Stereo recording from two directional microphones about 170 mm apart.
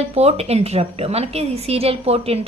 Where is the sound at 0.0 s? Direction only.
40° right (ahead or behind).